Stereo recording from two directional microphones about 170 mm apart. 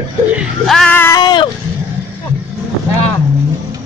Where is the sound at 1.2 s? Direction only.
25° left (ahead or behind).